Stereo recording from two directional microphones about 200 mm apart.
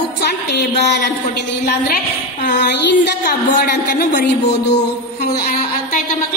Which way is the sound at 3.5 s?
50° left (ahead or behind).